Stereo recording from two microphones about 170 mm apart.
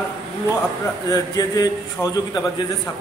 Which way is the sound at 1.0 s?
20° left (ahead or behind).